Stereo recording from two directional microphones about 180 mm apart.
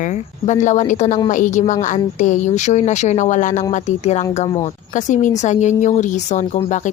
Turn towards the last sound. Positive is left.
turn(degrees=40)  # may be behind; listen again after turning